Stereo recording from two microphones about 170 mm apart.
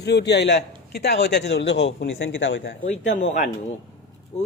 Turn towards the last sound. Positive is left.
turn(degrees=40)  # may be behind; listen again after turning